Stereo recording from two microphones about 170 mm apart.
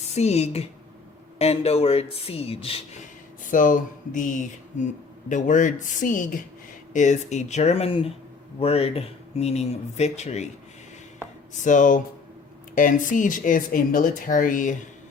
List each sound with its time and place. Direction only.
0.0 s a woman's voice: 40° left (ahead or behind)
3.5 s speech: 50° left (ahead or behind)
11.5 s speech: 50° left (ahead or behind)